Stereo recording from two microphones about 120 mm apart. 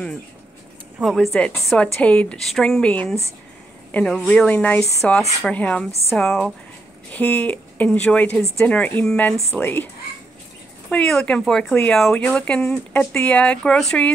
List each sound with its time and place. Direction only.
1.1 s a woman's voice: 5° left (ahead or behind)
2.0 s speech: 10° left (ahead or behind)
10.9 s speech: 5° left (ahead or behind)